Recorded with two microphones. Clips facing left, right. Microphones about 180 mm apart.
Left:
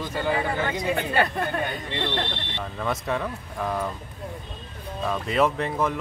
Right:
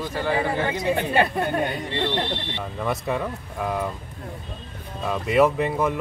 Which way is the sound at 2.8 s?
5° right (ahead or behind).